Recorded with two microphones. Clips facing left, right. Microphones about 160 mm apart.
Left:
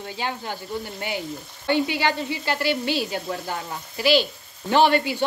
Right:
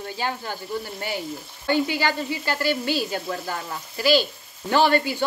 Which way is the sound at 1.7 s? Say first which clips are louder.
Even; 20° left (ahead or behind).